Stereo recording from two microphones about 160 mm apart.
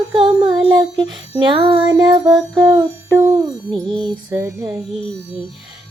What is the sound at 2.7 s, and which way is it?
Music, 20° right (ahead or behind).